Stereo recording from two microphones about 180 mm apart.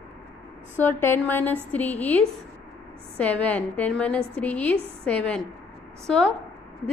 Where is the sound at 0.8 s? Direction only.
10° left (ahead or behind).